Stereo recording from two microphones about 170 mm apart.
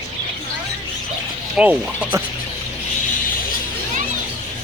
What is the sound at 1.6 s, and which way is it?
Speech, 10° right (ahead or behind).